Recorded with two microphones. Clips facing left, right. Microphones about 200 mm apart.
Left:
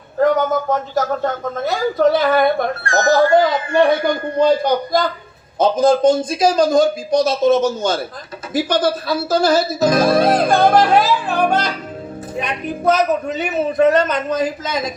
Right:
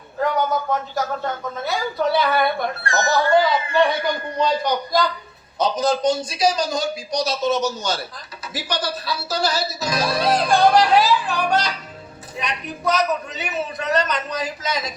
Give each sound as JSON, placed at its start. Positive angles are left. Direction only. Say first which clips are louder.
{"t": 0.2, "sound": "speech", "louder": "left 6 dB", "side_deg": 45}